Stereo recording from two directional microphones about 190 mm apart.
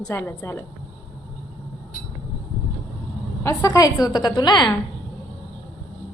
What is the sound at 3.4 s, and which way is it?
A woman's voice, 15° left (ahead or behind).